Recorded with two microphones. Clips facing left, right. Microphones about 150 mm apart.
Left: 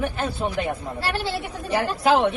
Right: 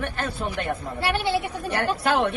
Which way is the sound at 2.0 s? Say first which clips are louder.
Left 5 dB; centre (ahead or behind).